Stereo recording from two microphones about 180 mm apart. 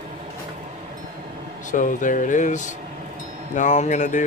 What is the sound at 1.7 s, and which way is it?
Speech, 45° left (ahead or behind).